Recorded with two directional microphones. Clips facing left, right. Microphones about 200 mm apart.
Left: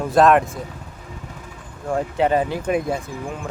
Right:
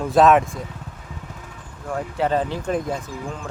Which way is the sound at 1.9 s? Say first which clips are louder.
Left 3 dB; 20° left (ahead or behind).